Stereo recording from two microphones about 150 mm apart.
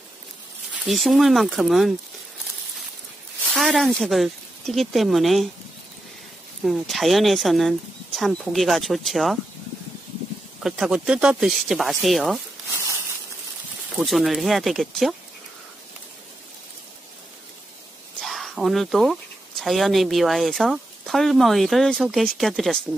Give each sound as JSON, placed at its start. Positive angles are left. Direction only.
{"t": 0.8, "sound": "speech", "side_deg": 0}
{"t": 3.4, "sound": "speech", "side_deg": 0}
{"t": 6.6, "sound": "speech", "side_deg": 0}
{"t": 10.6, "sound": "speech", "side_deg": -5}
{"t": 12.7, "sound": "a sound", "side_deg": -20}
{"t": 13.9, "sound": "speech", "side_deg": 0}
{"t": 18.2, "sound": "speech", "side_deg": 0}